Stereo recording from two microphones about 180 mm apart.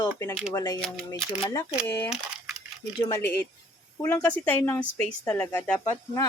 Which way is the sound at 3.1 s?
15° left (ahead or behind).